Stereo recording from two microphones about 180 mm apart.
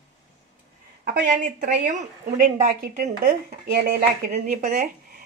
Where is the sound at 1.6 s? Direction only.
50° right (ahead or behind).